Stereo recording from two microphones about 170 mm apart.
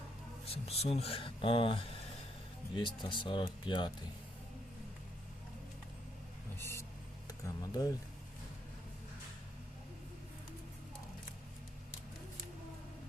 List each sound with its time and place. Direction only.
0.4 s speech: 35° left (ahead or behind)
6.6 s vehicle: 15° left (ahead or behind)
7.3 s speech: 20° left (ahead or behind)